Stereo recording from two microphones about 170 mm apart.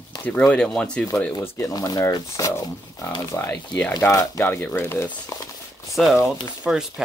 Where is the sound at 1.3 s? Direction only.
35° left (ahead or behind).